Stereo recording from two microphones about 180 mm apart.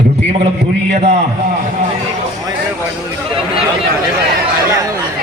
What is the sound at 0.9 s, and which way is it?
Speech, 40° right (ahead or behind).